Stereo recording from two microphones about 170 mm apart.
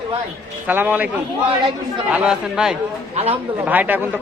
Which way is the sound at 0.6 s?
10° right (ahead or behind).